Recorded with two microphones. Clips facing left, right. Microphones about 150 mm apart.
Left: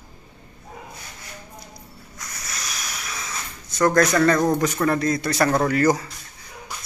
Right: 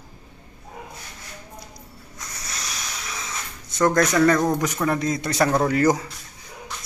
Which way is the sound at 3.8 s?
15° right (ahead or behind).